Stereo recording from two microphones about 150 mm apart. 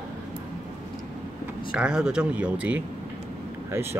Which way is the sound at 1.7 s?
5° right (ahead or behind).